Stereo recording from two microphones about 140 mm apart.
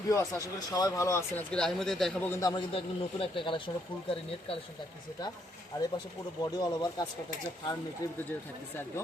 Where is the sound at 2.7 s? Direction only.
40° left (ahead or behind).